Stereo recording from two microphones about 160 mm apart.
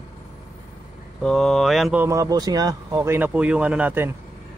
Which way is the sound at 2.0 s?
20° right (ahead or behind).